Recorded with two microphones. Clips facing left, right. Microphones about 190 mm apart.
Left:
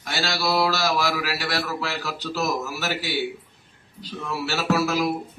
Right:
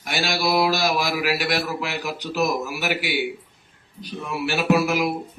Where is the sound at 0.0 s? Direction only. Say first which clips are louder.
Right 2 dB; 15° right (ahead or behind).